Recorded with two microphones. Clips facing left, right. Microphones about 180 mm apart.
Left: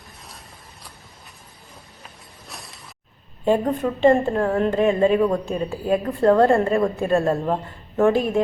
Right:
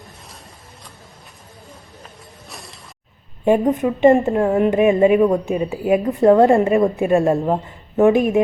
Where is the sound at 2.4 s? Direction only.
Centre (ahead or behind).